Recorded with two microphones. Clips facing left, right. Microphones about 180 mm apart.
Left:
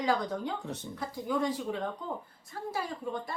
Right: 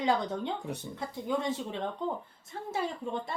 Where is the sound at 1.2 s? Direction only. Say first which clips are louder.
Left 1 dB; 25° right (ahead or behind).